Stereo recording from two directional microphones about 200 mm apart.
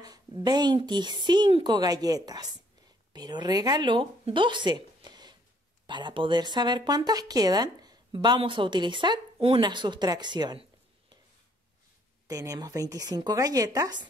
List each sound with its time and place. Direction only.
0.0 s speech: 20° right (ahead or behind)
12.3 s a woman's voice: 15° right (ahead or behind)